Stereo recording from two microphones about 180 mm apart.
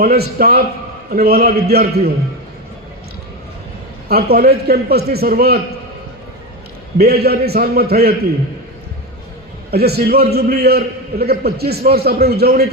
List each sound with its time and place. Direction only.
0.0 s a man's voice: 60° right (ahead or behind)
4.1 s a man's voice: 60° right (ahead or behind)
7.0 s a man's voice: 60° right (ahead or behind)
9.7 s a man's voice: 60° right (ahead or behind)